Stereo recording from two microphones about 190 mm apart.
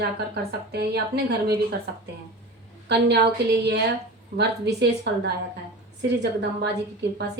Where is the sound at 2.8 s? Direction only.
60° right (ahead or behind).